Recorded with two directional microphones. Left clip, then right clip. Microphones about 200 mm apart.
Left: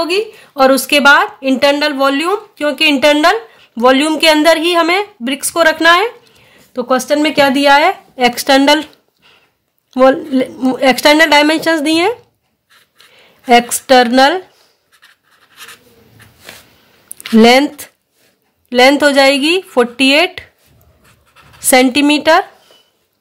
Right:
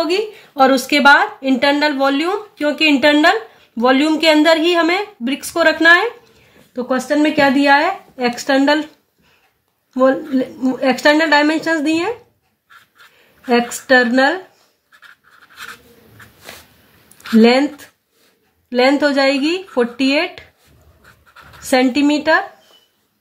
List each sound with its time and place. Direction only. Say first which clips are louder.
0.0 s a woman's voice: left 3 dB; 35° left (ahead or behind)
6.7 s a woman's voice: left 5 dB; 50° left (ahead or behind)
9.9 s a woman's voice: left 5 dB; 50° left (ahead or behind)
13.5 s a woman's voice: left 5 dB; 55° left (ahead or behind)
17.4 s a woman's voice: left 5 dB; 50° left (ahead or behind)
21.6 s a woman's voice: left 5 dB; 50° left (ahead or behind)